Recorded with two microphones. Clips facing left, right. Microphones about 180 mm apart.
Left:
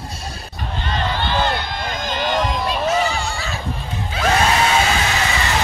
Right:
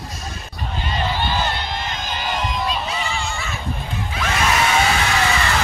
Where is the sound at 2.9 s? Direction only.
40° left (ahead or behind).